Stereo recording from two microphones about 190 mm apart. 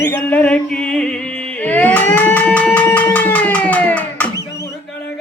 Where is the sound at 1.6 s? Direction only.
10° left (ahead or behind).